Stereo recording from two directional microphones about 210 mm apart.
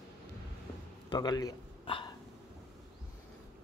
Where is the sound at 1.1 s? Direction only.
20° left (ahead or behind).